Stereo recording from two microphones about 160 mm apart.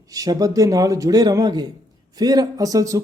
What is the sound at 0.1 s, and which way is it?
Speech, 20° right (ahead or behind).